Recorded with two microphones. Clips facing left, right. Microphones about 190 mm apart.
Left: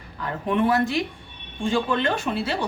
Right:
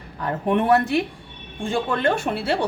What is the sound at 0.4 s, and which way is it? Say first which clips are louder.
A woman's voice: right 2 dB; 60° right (ahead or behind).